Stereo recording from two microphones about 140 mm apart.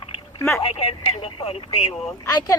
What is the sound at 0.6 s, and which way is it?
Speech, 40° left (ahead or behind).